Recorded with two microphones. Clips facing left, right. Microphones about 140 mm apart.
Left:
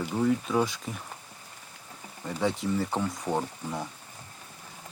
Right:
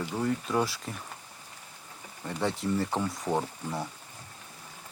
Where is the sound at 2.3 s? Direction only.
Centre (ahead or behind).